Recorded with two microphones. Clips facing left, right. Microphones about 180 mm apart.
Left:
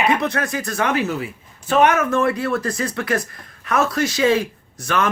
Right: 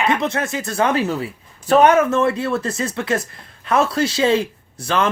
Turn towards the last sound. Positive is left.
turn(degrees=-30)  # may be behind; listen again after turning